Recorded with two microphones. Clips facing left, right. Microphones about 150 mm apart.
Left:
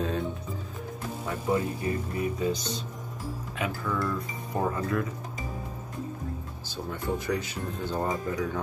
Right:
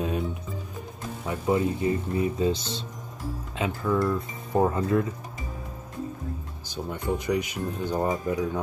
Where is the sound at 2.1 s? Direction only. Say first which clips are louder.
Right 4 dB; 30° right (ahead or behind).